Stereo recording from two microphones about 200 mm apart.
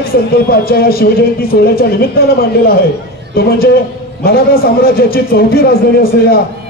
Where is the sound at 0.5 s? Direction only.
50° left (ahead or behind).